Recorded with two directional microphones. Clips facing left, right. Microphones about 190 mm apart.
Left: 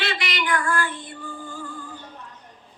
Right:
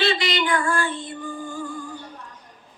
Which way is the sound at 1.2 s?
15° right (ahead or behind).